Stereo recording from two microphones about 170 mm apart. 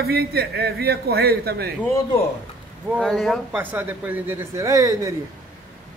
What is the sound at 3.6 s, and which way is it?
A man's voice, 10° right (ahead or behind).